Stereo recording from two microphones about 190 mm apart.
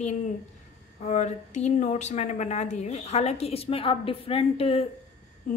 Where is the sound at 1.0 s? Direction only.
40° left (ahead or behind).